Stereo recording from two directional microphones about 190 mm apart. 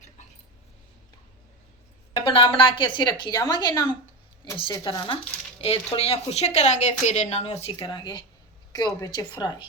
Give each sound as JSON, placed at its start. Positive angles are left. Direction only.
{"t": 2.2, "sound": "a woman's voice", "side_deg": 25}